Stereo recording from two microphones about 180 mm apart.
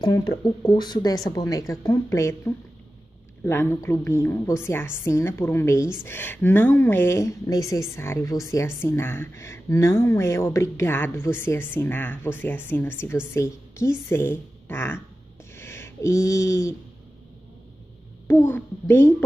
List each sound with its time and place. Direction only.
0.0 s a woman's voice: 20° left (ahead or behind)
15.5 s a sound: 15° left (ahead or behind)
18.2 s a woman's voice: 10° left (ahead or behind)